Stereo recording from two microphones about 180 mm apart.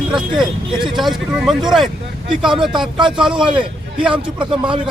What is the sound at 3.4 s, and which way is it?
A man's voice, 25° right (ahead or behind).